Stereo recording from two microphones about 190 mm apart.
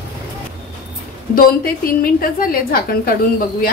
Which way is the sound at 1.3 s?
50° left (ahead or behind).